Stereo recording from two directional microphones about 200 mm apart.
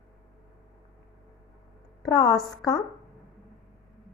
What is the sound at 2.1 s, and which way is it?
Speech, 20° left (ahead or behind).